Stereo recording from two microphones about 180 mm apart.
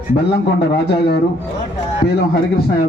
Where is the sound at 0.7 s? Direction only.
65° left (ahead or behind).